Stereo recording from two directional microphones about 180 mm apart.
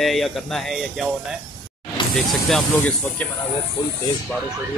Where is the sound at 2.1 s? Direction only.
Centre (ahead or behind).